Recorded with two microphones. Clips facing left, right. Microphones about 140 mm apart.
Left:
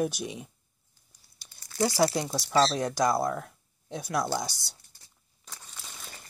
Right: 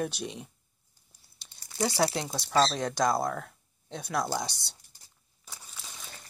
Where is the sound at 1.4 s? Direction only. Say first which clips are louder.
Left 3 dB; 20° right (ahead or behind).